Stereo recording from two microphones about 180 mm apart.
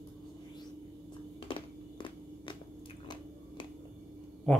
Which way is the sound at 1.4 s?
30° left (ahead or behind).